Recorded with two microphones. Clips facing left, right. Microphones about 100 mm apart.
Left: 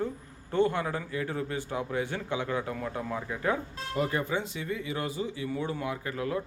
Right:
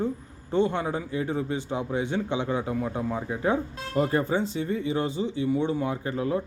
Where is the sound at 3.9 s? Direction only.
35° right (ahead or behind).